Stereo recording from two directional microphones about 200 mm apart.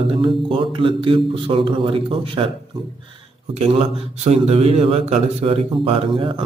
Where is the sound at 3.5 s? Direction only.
30° right (ahead or behind).